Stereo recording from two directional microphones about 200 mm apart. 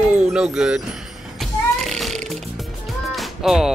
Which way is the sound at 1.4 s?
Centre (ahead or behind).